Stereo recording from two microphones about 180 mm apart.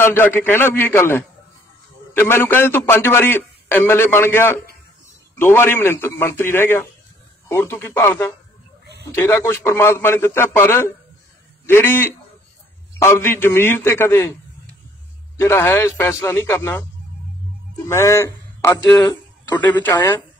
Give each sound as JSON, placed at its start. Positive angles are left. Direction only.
{"t": 0.0, "sound": "a man's voice", "side_deg": 10}
{"t": 15.3, "sound": "a man's voice", "side_deg": 15}
{"t": 17.8, "sound": "a man's voice", "side_deg": 15}